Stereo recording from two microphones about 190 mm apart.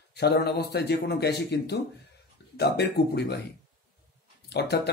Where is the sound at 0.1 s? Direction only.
60° left (ahead or behind).